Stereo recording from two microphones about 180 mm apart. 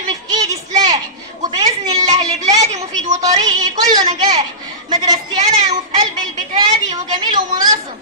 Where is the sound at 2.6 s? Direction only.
40° right (ahead or behind).